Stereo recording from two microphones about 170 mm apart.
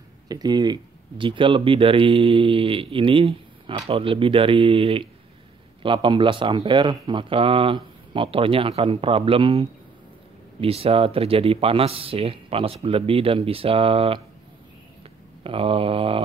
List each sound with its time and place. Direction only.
0.3 s speech: 25° right (ahead or behind)
15.4 s speech: 30° right (ahead or behind)